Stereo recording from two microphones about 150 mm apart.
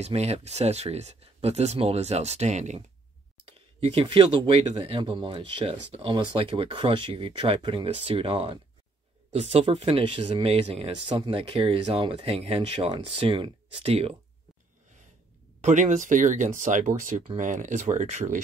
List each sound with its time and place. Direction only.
0.0 s speech: 45° right (ahead or behind)
3.8 s speech: 40° right (ahead or behind)
15.6 s speech: 55° right (ahead or behind)